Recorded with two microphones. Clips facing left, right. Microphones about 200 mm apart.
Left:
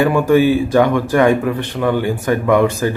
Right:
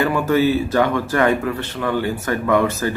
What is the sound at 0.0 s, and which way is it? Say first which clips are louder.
Speech: left 5 dB; 15° left (ahead or behind).